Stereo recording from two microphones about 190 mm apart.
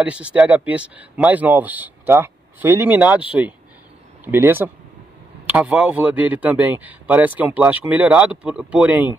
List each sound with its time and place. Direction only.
0.0 s speech: 5° right (ahead or behind)